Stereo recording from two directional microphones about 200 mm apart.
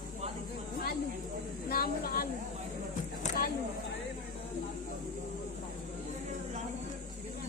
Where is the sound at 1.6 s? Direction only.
50° left (ahead or behind).